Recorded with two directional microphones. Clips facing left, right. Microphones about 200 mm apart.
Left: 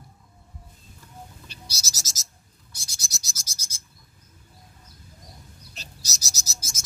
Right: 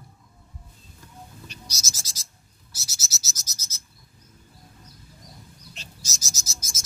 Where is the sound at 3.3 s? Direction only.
10° left (ahead or behind).